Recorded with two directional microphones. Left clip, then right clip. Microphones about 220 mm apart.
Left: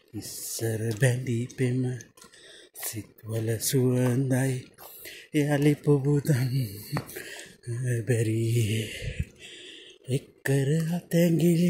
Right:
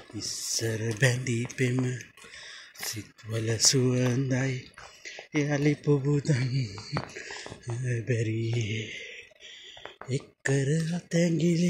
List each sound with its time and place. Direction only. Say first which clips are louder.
0.3 s speech: right 2 dB; 15° left (ahead or behind); by 9.2 s 30° left (ahead or behind)
10.0 s speech: left 1 dB; 20° left (ahead or behind)